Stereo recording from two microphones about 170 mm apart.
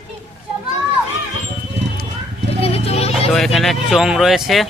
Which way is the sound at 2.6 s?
35° left (ahead or behind).